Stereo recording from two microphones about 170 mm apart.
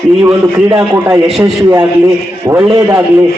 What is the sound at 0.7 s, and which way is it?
Speech, 15° right (ahead or behind).